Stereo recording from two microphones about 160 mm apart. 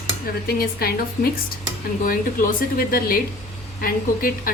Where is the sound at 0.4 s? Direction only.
70° left (ahead or behind).